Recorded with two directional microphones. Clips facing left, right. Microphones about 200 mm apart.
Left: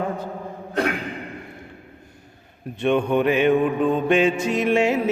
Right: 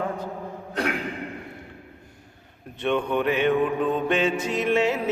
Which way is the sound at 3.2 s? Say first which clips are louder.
Left 3 dB; 15° left (ahead or behind).